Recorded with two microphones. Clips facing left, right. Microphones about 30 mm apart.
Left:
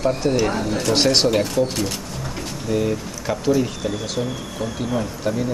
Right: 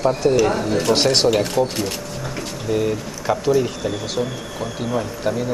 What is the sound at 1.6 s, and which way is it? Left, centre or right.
Speech, right.